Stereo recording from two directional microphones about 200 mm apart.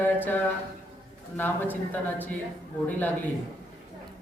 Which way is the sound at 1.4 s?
10° left (ahead or behind).